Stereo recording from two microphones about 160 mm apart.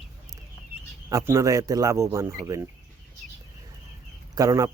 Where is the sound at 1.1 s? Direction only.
20° right (ahead or behind).